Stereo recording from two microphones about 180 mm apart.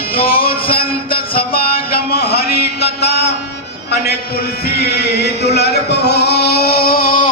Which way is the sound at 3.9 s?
60° left (ahead or behind).